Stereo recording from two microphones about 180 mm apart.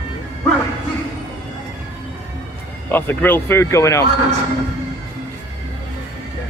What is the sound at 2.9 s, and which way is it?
Speech, 10° left (ahead or behind).